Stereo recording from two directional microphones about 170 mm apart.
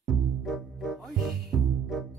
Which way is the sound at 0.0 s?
Centre (ahead or behind).